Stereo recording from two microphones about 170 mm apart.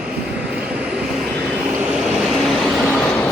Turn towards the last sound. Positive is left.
turn(degrees=5)  # may be behind; listen again after turning